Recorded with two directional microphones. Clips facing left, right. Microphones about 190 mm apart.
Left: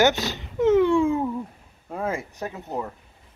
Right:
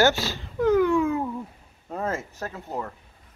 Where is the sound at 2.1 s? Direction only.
15° left (ahead or behind).